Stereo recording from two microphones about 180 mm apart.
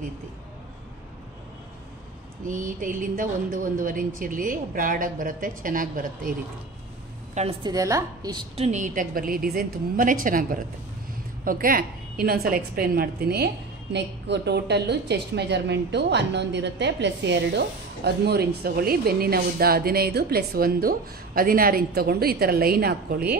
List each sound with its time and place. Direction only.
2.4 s speech: 45° right (ahead or behind)
7.6 s a woman's voice: 20° right (ahead or behind)
8.5 s a woman's voice: 40° right (ahead or behind); by 13.5 s 60° right (ahead or behind)
13.9 s a woman's voice: 70° right (ahead or behind)